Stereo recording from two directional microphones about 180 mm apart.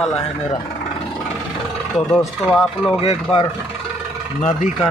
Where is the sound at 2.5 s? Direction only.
5° left (ahead or behind).